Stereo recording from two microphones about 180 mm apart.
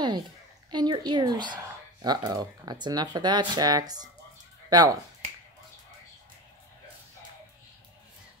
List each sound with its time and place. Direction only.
0.7 s speech: 25° right (ahead or behind)